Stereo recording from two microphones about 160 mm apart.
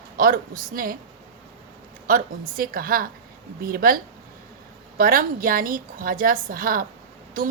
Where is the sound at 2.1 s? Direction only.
65° right (ahead or behind).